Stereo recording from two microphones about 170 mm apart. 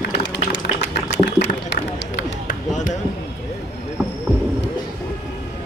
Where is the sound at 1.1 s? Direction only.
90° left.